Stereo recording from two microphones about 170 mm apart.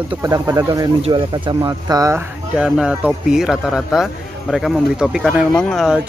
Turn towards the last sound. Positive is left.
turn(degrees=0)  # may be behind; listen again after turning